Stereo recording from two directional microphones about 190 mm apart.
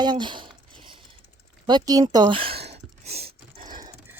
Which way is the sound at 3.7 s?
20° right (ahead or behind).